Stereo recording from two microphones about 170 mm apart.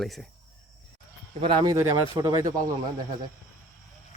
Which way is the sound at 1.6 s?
20° right (ahead or behind).